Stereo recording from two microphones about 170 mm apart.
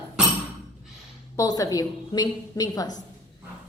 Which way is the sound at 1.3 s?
20° left (ahead or behind).